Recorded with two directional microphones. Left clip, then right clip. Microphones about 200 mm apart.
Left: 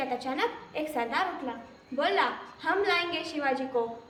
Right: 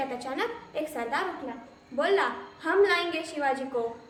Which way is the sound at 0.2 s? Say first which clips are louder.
Left 1 dB; 20° right (ahead or behind).